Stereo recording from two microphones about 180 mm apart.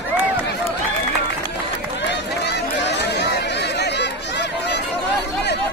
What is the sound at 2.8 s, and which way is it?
Chatter, 70° left (ahead or behind).